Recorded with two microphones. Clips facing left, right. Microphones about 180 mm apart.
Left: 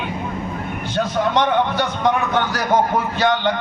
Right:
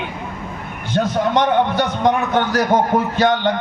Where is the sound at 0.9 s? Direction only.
50° right (ahead or behind).